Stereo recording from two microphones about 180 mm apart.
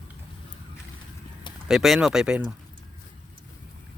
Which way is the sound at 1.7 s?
Centre (ahead or behind).